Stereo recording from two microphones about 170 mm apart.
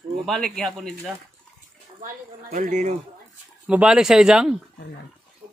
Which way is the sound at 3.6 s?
5° right (ahead or behind).